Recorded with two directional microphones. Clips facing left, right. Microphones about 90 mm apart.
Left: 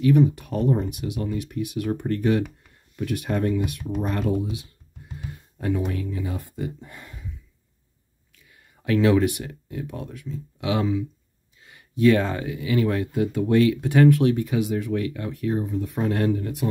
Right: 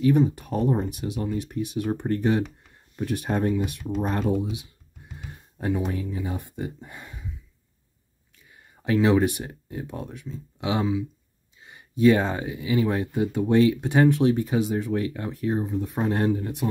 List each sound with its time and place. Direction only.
0.0 s speech: 30° right (ahead or behind)
8.5 s speech: 25° right (ahead or behind)
12.0 s speech: 20° right (ahead or behind)